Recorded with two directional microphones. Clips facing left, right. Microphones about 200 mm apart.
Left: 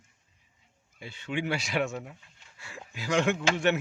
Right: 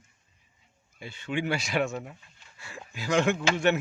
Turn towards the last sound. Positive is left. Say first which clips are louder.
# right 1 dB
turn(degrees=-45)  # may be behind; listen again after turning